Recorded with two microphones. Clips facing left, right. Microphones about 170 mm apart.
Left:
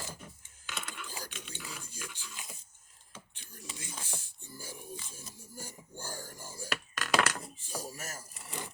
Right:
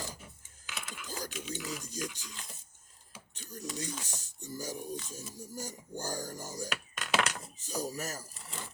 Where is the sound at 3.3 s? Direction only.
40° right (ahead or behind).